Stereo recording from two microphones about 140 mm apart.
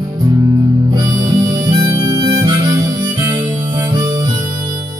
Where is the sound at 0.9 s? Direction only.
30° right (ahead or behind).